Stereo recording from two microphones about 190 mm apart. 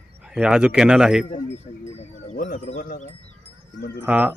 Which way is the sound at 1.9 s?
40° left (ahead or behind).